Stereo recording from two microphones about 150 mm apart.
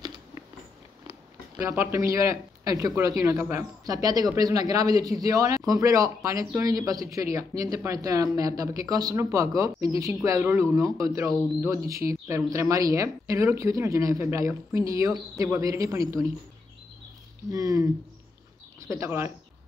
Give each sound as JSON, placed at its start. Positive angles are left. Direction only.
{"t": 1.6, "sound": "speech", "side_deg": -15}
{"t": 17.5, "sound": "speech", "side_deg": -20}